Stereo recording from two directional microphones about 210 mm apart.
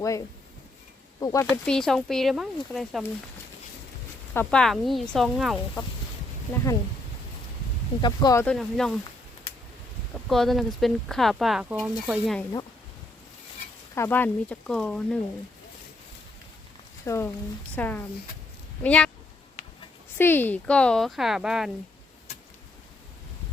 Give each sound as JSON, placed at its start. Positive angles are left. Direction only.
{"t": 0.0, "sound": "speech", "side_deg": 15}
{"t": 1.6, "sound": "speech", "side_deg": 5}
{"t": 4.4, "sound": "speech", "side_deg": 5}
{"t": 8.0, "sound": "speech", "side_deg": 20}
{"t": 8.4, "sound": "speech", "side_deg": 0}
{"t": 10.2, "sound": "speech", "side_deg": 0}
{"t": 13.9, "sound": "speech", "side_deg": 10}
{"t": 17.1, "sound": "speech", "side_deg": 10}
{"t": 20.1, "sound": "speech", "side_deg": 10}